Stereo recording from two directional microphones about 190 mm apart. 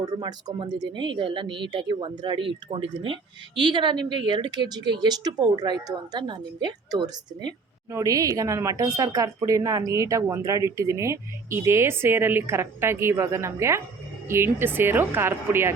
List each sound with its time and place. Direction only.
0.0 s a woman's voice: 20° right (ahead or behind)